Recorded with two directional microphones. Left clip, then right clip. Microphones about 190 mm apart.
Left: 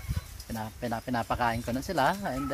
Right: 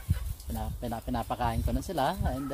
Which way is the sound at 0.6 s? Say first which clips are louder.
Left 3 dB; 20° left (ahead or behind).